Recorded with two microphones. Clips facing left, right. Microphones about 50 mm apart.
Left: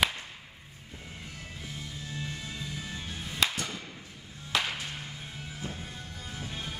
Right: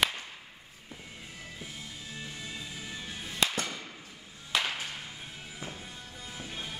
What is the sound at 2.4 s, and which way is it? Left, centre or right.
Music, centre.